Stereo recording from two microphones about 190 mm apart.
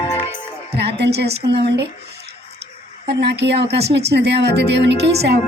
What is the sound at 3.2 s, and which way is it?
Speech, 65° right (ahead or behind).